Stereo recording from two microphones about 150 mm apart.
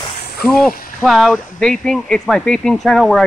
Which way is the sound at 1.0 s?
Centre (ahead or behind).